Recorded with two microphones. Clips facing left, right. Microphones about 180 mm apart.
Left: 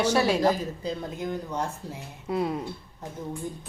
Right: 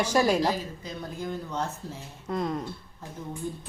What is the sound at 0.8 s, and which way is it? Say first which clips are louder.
Speech: left 5 dB; 30° left (ahead or behind).